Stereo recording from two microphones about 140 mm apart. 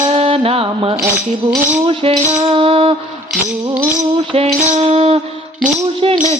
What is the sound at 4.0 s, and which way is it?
Music, 50° right (ahead or behind).